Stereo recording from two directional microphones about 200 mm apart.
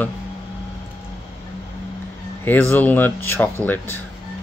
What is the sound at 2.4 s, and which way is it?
A man's voice, 10° left (ahead or behind).